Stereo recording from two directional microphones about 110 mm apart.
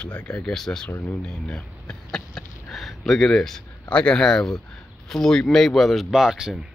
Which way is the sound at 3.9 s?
10° left (ahead or behind).